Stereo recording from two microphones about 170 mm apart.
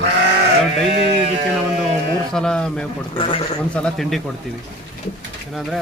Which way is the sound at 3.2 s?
30° left (ahead or behind).